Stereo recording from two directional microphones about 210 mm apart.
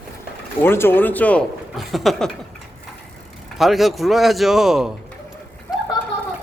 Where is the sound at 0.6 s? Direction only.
10° left (ahead or behind).